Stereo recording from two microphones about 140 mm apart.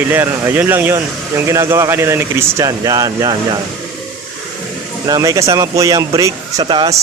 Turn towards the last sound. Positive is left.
turn(degrees=-35)  # may be behind; listen again after turning